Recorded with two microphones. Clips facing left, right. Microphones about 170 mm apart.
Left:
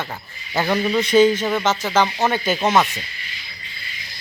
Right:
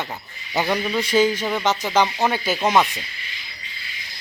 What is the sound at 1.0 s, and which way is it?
Speech, 10° right (ahead or behind).